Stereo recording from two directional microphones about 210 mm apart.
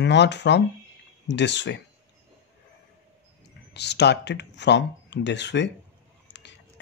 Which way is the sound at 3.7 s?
55° left (ahead or behind).